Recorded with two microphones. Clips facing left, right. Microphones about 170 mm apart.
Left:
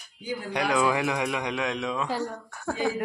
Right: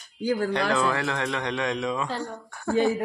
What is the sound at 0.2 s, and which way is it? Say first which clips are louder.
Speech: right 9 dB; 75° right (ahead or behind).